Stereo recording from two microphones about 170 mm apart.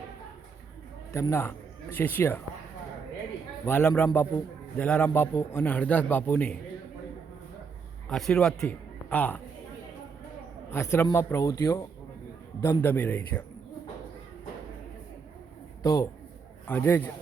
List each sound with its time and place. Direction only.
1.1 s a man's voice: 15° left (ahead or behind)
3.7 s a man's voice: 15° left (ahead or behind)
8.1 s a man's voice: 5° left (ahead or behind)
10.7 s a man's voice: 15° left (ahead or behind)
15.8 s a man's voice: 20° left (ahead or behind)